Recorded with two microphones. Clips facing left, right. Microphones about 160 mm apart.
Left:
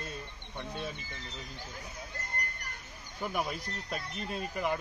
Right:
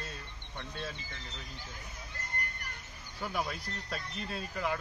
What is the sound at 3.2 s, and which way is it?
Speech, 15° left (ahead or behind).